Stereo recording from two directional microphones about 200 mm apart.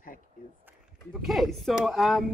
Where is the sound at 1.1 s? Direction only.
Centre (ahead or behind).